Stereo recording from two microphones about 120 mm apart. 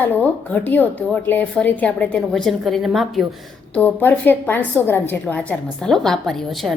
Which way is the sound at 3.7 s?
15° left (ahead or behind).